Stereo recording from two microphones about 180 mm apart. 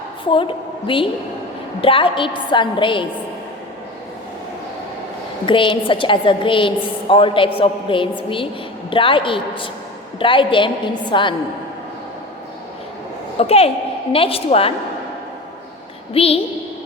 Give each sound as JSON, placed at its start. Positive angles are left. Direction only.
{"t": 0.3, "sound": "a woman's voice", "side_deg": 30}
{"t": 5.5, "sound": "a woman's voice", "side_deg": 30}
{"t": 13.4, "sound": "a woman's voice", "side_deg": 35}
{"t": 16.1, "sound": "a woman's voice", "side_deg": 30}